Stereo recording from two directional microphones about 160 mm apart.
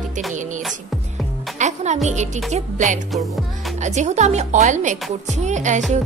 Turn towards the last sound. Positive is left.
turn(degrees=-50)  # may be behind; listen again after turning